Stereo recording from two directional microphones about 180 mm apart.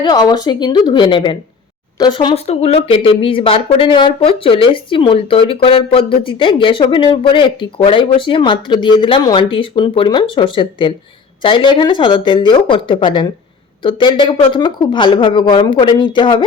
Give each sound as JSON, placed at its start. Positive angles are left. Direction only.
{"t": 0.0, "sound": "speech", "side_deg": 25}